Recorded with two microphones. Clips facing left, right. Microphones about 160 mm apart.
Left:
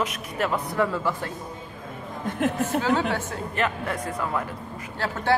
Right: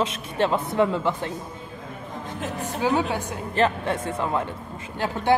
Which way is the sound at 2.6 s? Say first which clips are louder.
Right 4 dB; 15° right (ahead or behind).